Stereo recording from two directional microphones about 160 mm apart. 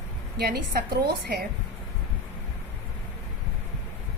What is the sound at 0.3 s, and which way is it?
Speech, 75° right (ahead or behind).